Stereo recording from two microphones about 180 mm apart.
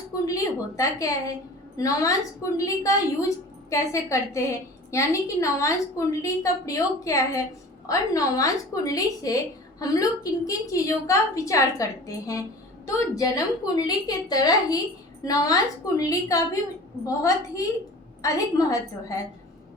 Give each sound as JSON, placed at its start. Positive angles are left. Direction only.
{"t": 0.3, "sound": "a woman's voice", "side_deg": 20}